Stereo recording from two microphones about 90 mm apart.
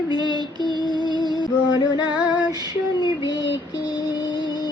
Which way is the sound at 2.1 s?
10° right (ahead or behind).